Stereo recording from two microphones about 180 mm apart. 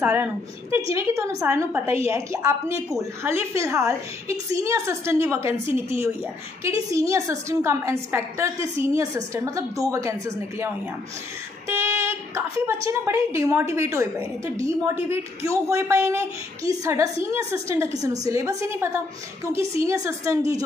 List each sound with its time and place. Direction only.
0.0 s a woman's voice: 15° right (ahead or behind)
6.6 s a woman's voice: 20° right (ahead or behind)